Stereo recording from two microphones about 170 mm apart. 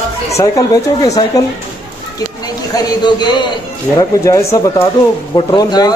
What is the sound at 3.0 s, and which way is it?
A man's voice, 25° left (ahead or behind).